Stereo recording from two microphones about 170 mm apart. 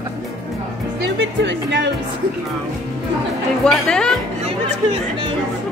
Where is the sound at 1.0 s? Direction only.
90° right.